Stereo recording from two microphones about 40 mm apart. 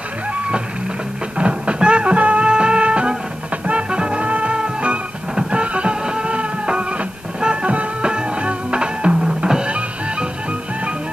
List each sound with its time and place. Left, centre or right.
1.4 s music: right